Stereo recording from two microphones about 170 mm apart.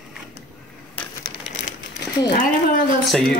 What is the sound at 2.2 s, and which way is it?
Speech, 55° left (ahead or behind).